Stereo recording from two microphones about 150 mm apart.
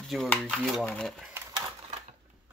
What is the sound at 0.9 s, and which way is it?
Speech, 5° left (ahead or behind).